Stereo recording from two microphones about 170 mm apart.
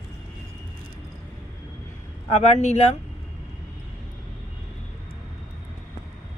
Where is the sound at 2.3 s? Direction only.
40° left (ahead or behind).